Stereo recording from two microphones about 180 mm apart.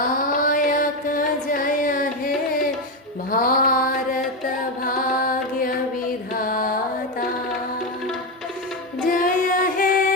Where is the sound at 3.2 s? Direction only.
50° left (ahead or behind).